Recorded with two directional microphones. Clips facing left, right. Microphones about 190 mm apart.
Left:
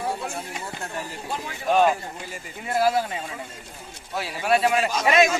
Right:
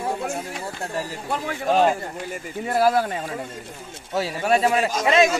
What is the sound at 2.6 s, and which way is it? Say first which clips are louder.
A man's voice: right 2 dB; 45° right (ahead or behind).